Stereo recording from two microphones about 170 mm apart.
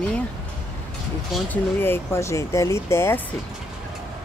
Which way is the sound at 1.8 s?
15° left (ahead or behind).